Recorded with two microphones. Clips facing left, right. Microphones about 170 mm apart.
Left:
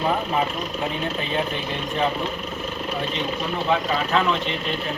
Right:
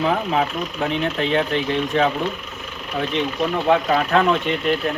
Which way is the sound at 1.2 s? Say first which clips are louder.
Right 8 dB; 75° right (ahead or behind).